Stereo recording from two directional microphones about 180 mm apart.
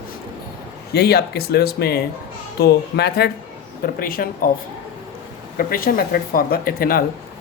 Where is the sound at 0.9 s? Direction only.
65° left (ahead or behind).